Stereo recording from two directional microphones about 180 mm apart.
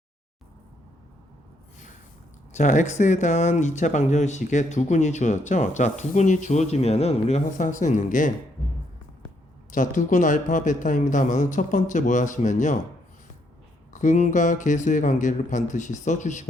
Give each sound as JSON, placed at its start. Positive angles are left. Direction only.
{"t": 2.5, "sound": "speech", "side_deg": 40}
{"t": 9.7, "sound": "a man's voice", "side_deg": 45}
{"t": 13.9, "sound": "a man's voice", "side_deg": 45}